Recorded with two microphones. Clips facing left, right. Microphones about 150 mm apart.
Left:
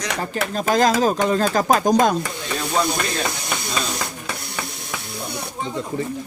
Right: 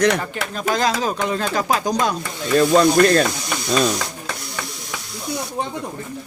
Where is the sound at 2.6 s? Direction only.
60° right (ahead or behind).